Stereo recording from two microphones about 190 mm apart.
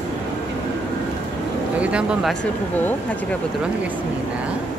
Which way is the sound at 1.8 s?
5° right (ahead or behind).